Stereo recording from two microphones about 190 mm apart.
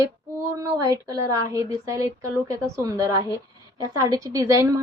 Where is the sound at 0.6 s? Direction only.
20° right (ahead or behind).